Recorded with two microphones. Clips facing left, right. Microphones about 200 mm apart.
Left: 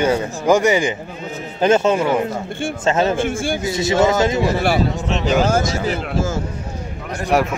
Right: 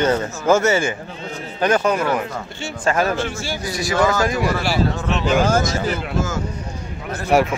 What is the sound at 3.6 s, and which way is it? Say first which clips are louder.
Speech: left 2 dB; 25° left (ahead or behind).